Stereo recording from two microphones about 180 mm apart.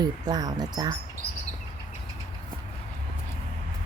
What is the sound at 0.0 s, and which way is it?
Speech, 20° right (ahead or behind).